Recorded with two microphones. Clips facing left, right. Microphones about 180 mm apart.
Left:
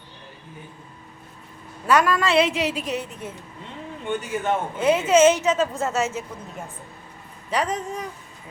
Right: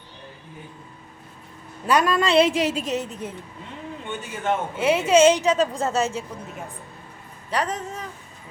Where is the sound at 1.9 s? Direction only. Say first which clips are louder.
Even; 20° right (ahead or behind).